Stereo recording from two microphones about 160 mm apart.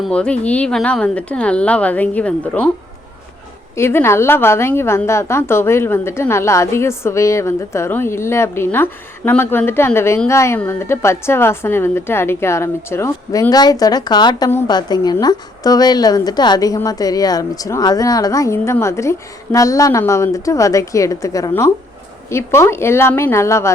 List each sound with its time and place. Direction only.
0.0 s a woman's voice: 5° left (ahead or behind)
3.8 s a woman's voice: 15° left (ahead or behind)